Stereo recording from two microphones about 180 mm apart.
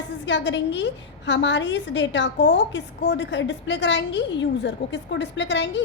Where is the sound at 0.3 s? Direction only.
80° left.